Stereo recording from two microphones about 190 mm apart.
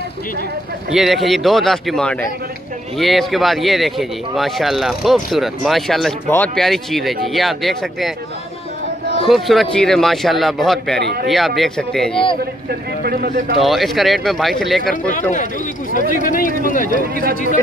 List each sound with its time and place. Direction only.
0.9 s speech: centre (ahead or behind)
9.3 s speech: centre (ahead or behind)
11.0 s speech: 65° right (ahead or behind)
11.2 s speech: centre (ahead or behind)
12.6 s speech: 55° right (ahead or behind)
13.6 s speech: centre (ahead or behind)
15.9 s speech: 45° left (ahead or behind)
17.1 s speech: 50° right (ahead or behind)